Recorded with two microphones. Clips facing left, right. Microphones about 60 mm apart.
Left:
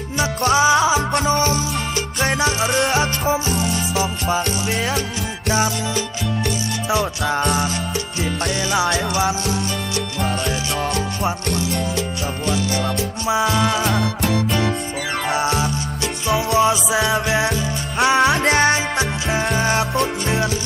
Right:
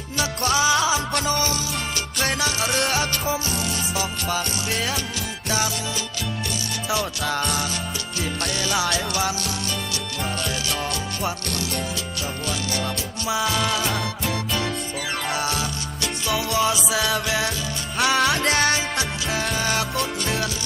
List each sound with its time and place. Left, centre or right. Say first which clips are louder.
0.2 s music: left 5 dB; left
7.4 s music: left 6 dB; left
8.7 s music: left 5 dB; left
13.2 s music: left 5 dB; left
14.2 s music: left 6 dB; left
15.3 s music: left 7 dB; left